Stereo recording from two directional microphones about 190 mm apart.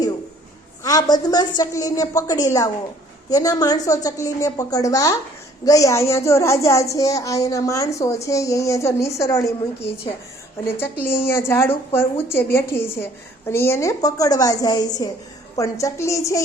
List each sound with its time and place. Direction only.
0.9 s a woman's voice: 20° left (ahead or behind)
11.1 s a woman's voice: 15° left (ahead or behind)